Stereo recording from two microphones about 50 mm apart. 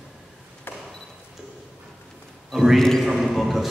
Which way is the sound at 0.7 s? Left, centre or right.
Left.